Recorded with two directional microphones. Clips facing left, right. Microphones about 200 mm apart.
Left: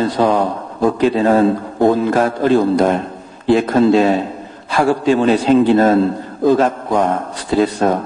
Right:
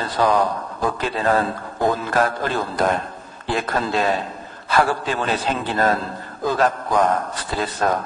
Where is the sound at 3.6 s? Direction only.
25° left (ahead or behind).